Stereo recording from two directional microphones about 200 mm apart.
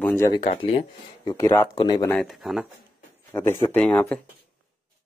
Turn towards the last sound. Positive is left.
turn(degrees=5)  # may be behind; listen again after turning